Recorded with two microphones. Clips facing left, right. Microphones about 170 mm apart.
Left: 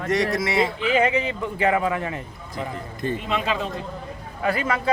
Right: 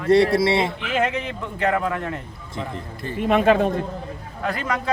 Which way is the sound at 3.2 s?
55° right (ahead or behind).